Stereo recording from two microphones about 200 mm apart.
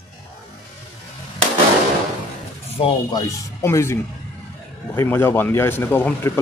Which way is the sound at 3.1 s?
15° left (ahead or behind).